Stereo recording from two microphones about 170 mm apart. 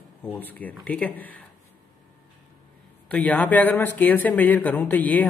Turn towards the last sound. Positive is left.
turn(degrees=10)  # may be behind; listen again after turning